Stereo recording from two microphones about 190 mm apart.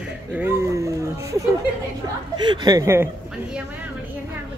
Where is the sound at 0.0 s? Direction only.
10° right (ahead or behind).